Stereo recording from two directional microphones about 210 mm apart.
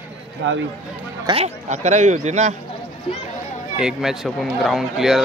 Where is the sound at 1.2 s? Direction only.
30° right (ahead or behind).